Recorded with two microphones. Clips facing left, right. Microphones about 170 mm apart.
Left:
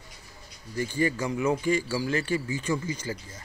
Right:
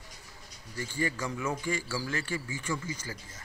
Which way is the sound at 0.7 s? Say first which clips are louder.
Left 6 dB; 20° left (ahead or behind).